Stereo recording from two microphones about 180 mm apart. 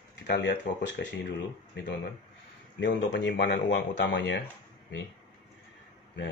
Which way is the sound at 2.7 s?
80° left.